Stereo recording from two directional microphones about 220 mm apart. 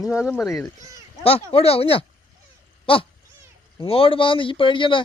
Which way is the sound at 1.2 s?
25° left (ahead or behind).